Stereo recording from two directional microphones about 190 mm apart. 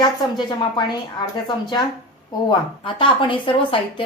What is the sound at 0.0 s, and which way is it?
Speech, 25° left (ahead or behind).